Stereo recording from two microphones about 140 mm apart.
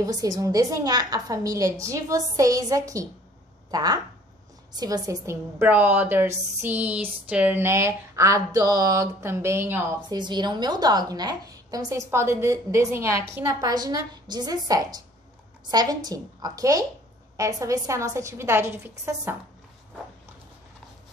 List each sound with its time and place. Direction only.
0.0 s a woman's voice: 25° right (ahead or behind)
10.0 s a woman's voice: 30° right (ahead or behind)